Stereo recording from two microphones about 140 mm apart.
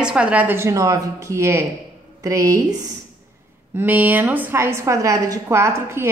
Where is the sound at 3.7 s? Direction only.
10° right (ahead or behind).